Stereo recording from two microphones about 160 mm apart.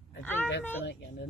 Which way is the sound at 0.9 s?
90° left.